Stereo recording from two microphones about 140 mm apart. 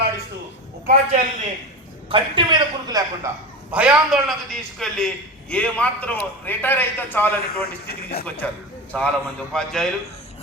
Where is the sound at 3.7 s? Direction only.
10° right (ahead or behind).